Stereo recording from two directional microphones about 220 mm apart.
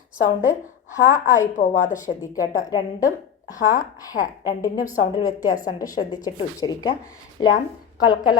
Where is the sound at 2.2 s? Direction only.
15° left (ahead or behind).